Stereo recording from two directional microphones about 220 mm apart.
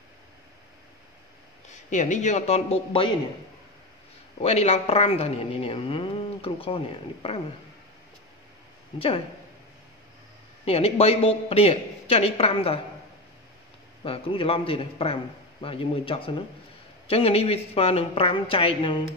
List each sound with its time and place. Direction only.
1.7 s a man's voice: 35° left (ahead or behind)
4.4 s speech: 30° left (ahead or behind)
8.9 s speech: 25° left (ahead or behind)
10.6 s speech: 25° left (ahead or behind)
14.0 s speech: 25° left (ahead or behind)